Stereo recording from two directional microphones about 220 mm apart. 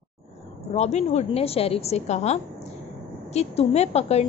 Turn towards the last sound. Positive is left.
turn(degrees=30)  # may be behind; listen again after turning